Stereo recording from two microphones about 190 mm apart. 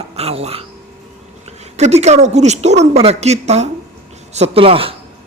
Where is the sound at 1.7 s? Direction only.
35° right (ahead or behind).